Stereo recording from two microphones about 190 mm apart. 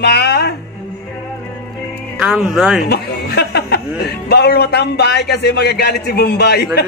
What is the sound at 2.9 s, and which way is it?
A man's voice, 60° left (ahead or behind).